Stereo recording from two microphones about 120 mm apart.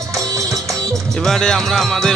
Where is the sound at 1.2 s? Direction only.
5° left (ahead or behind).